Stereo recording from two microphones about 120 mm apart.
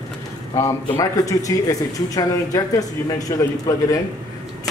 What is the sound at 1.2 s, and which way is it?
Speech, 30° left (ahead or behind).